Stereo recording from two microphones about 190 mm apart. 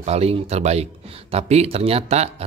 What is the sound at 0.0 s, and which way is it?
A man's voice, 35° right (ahead or behind).